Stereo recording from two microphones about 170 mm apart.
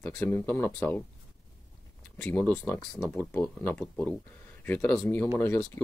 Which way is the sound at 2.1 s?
10° left (ahead or behind).